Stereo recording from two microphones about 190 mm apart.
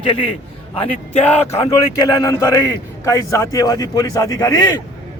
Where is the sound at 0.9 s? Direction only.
35° left (ahead or behind).